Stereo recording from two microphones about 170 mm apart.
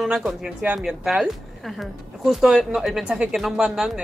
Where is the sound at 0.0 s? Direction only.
5° right (ahead or behind).